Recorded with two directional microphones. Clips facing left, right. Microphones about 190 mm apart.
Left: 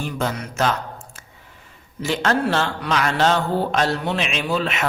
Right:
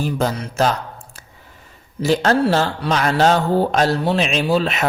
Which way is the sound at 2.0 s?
35° right (ahead or behind).